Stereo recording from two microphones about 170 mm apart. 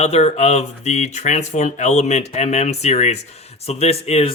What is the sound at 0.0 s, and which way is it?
Speech, 40° left (ahead or behind).